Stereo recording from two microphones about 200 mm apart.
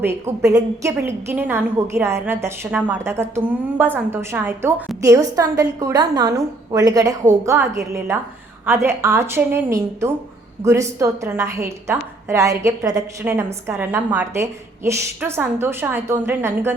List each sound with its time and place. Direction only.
0.0 s a woman's voice: 15° right (ahead or behind)